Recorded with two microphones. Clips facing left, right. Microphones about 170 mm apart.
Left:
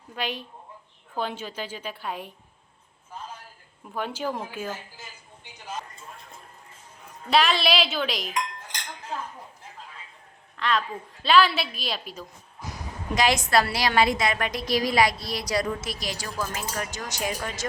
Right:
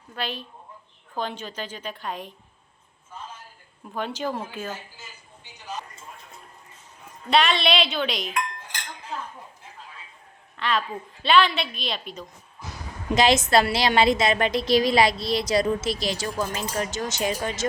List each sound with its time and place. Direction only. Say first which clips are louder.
0.2 s a woman's voice: even; 15° left (ahead or behind)
3.9 s a woman's voice: right 1 dB; 10° left (ahead or behind)
7.3 s a woman's voice: right 1 dB; centre (ahead or behind)
10.6 s a woman's voice: even; centre (ahead or behind)
13.1 s a woman's voice: right 3 dB; 25° right (ahead or behind)